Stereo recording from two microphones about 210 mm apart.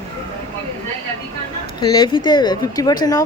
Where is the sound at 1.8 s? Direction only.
20° left (ahead or behind).